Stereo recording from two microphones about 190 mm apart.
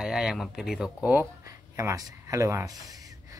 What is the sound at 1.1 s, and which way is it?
Speech, 15° right (ahead or behind).